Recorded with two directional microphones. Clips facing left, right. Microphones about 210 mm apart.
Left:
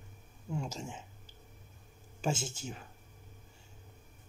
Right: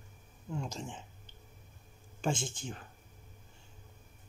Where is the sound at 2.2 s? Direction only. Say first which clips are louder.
Even; 5° left (ahead or behind).